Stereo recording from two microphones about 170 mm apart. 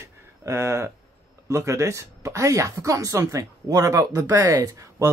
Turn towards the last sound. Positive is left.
turn(degrees=-20)  # may be behind; listen again after turning